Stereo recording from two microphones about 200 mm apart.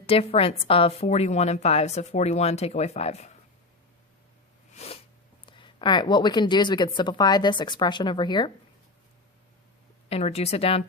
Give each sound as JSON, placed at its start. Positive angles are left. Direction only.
{"t": 0.0, "sound": "a woman's voice", "side_deg": 30}
{"t": 4.7, "sound": "sneeze", "side_deg": 35}
{"t": 5.5, "sound": "a woman's voice", "side_deg": 25}
{"t": 10.1, "sound": "a woman's voice", "side_deg": 30}